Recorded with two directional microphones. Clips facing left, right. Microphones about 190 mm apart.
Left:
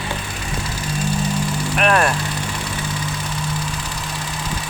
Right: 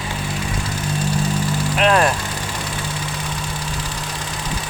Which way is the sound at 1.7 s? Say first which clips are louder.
Right 1 dB; 20° right (ahead or behind).